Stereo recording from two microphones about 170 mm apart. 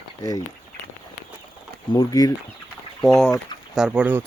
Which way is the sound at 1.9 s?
20° left (ahead or behind).